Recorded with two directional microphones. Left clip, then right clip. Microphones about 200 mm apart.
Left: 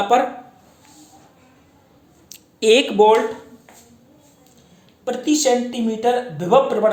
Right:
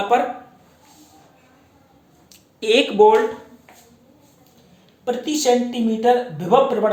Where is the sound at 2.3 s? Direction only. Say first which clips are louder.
Left 4 dB; 45° left (ahead or behind).